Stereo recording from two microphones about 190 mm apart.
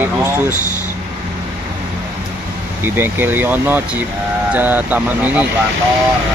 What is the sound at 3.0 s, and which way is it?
Speech, 10° right (ahead or behind).